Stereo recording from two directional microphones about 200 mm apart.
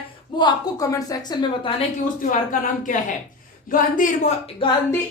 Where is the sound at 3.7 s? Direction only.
40° left (ahead or behind).